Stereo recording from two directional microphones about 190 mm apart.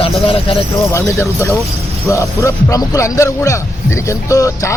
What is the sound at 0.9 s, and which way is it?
Speech, 15° left (ahead or behind).